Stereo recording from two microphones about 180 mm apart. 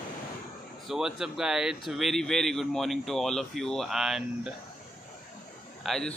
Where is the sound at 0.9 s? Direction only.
5° right (ahead or behind).